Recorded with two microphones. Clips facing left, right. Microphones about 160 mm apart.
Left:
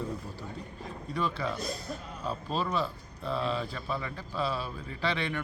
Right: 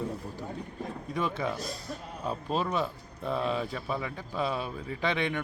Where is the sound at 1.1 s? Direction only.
20° right (ahead or behind).